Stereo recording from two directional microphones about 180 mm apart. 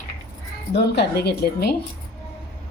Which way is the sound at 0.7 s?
65° left (ahead or behind).